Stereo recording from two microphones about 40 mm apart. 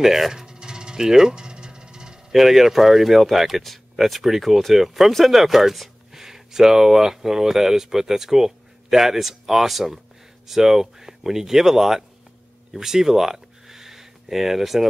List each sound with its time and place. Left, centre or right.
0.0 s music: centre
2.3 s speech: centre